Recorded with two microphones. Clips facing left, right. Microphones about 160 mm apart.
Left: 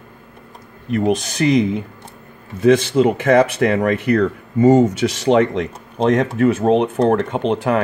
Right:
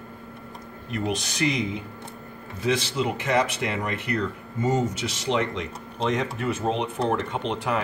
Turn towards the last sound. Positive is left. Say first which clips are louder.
# left 9 dB
turn(degrees=50)  # may be behind; listen again after turning